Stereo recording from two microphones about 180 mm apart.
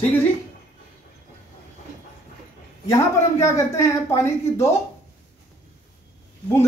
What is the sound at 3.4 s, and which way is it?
A woman's voice, 15° left (ahead or behind).